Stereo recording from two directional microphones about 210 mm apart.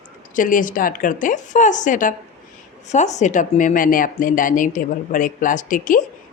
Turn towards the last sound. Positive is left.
turn(degrees=40)  # may be behind; listen again after turning